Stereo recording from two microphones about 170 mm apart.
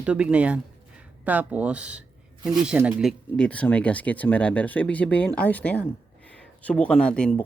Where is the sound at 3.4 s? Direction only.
5° left (ahead or behind).